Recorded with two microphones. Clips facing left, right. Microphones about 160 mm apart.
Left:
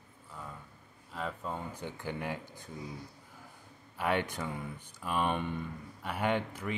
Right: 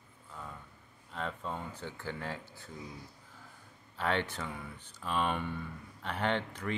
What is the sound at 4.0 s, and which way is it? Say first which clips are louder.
Speech: left 1 dB; 10° left (ahead or behind).